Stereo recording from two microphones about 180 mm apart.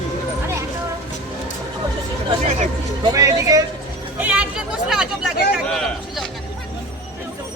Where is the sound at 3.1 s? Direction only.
20° right (ahead or behind).